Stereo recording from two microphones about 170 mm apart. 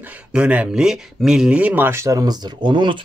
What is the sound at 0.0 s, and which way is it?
Speech, 5° right (ahead or behind).